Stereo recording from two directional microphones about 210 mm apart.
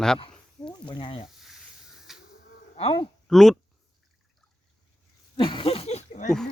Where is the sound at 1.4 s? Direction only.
Centre (ahead or behind).